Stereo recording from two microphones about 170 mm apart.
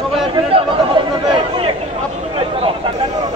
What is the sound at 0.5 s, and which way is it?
Chatter, 30° right (ahead or behind).